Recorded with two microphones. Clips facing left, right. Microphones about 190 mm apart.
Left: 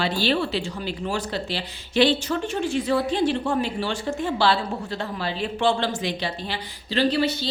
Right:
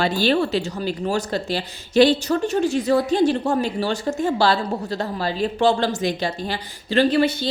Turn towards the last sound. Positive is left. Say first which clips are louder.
# right 4 dB
turn(degrees=-50)  # may be behind; listen again after turning